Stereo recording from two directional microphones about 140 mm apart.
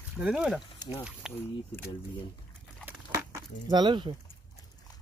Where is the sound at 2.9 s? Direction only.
20° right (ahead or behind).